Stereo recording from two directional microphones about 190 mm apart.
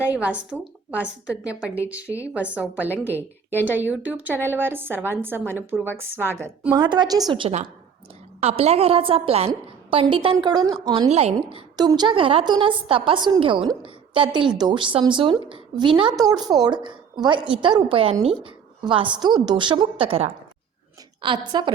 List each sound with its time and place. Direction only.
0.0 s speech: 5° right (ahead or behind)
2.0 s speech: 15° left (ahead or behind)
2.3 s speech: 5° right (ahead or behind)
6.7 s a woman's voice: 25° right (ahead or behind)
11.1 s a woman's voice: 35° right (ahead or behind)